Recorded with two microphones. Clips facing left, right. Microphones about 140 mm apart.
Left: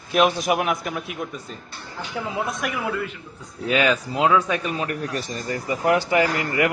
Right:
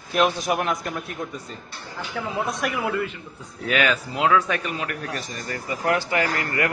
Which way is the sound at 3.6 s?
25° left (ahead or behind).